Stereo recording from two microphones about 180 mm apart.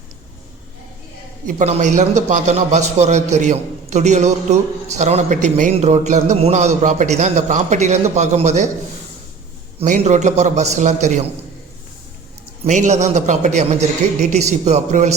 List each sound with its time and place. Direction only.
1.5 s a man's voice: 40° right (ahead or behind)
9.8 s a man's voice: 40° right (ahead or behind)
12.6 s a man's voice: 40° right (ahead or behind)